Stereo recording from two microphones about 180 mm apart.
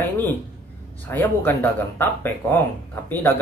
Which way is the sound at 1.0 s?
10° left (ahead or behind).